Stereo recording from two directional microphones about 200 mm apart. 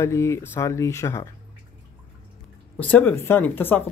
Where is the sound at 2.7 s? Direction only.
10° left (ahead or behind).